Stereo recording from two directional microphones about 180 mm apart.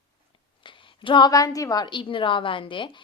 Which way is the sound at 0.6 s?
30° left (ahead or behind).